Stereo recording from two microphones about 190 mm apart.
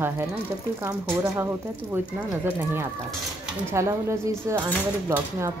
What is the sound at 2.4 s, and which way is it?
Speech, 10° right (ahead or behind).